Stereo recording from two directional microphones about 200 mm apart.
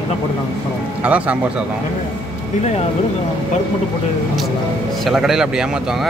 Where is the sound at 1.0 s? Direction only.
5° right (ahead or behind).